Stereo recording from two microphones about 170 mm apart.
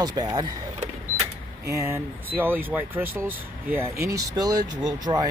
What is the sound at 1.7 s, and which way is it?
Speech, 15° right (ahead or behind).